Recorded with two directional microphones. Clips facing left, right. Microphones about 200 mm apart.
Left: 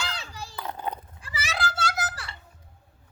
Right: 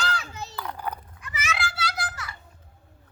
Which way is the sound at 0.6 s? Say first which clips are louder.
Left 1 dB; 20° left (ahead or behind).